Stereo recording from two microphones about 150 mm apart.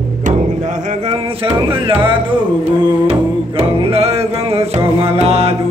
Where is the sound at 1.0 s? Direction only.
40° right (ahead or behind).